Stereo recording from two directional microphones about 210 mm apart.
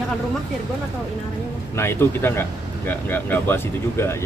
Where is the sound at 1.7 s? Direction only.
10° left (ahead or behind).